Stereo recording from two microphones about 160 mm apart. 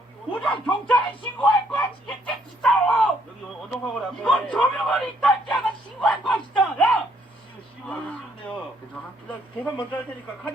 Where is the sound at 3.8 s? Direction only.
5° left (ahead or behind).